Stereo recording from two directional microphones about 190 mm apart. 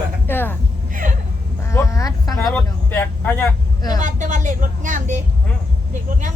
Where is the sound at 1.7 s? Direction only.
15° left (ahead or behind).